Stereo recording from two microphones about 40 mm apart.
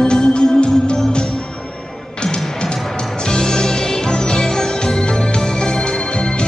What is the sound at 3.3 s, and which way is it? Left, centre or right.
Music, centre.